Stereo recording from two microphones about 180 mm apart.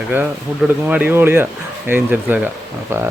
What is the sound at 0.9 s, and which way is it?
Speech, 10° right (ahead or behind).